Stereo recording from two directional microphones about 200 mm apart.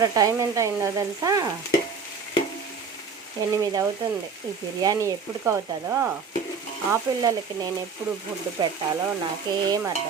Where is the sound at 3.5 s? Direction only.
15° right (ahead or behind).